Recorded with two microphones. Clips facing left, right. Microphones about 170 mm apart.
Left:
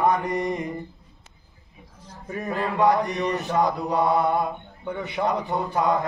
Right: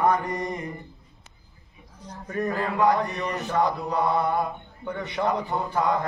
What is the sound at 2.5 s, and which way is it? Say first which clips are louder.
Mantra: left 2 dB; 20° left (ahead or behind).